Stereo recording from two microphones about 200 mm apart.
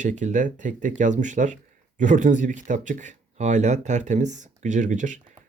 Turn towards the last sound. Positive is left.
turn(degrees=-40)  # may be behind; listen again after turning